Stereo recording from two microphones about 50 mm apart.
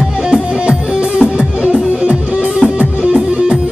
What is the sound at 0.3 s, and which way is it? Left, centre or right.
Music, centre.